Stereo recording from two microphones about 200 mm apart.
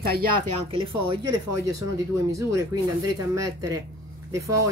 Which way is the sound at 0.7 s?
25° right (ahead or behind).